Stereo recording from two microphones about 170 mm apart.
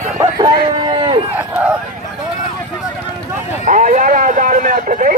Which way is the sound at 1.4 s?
10° right (ahead or behind).